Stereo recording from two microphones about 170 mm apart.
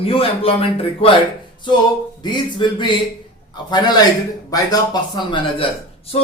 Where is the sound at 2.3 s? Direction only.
25° left (ahead or behind).